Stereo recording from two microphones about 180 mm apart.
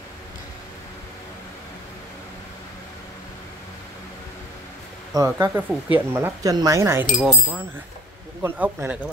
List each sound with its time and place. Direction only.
5.1 s speech: 15° right (ahead or behind)
7.1 s speech: centre (ahead or behind)
8.4 s speech: 10° right (ahead or behind)